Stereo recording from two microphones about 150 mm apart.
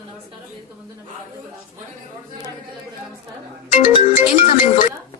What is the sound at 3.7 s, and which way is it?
Speech, 55° left (ahead or behind).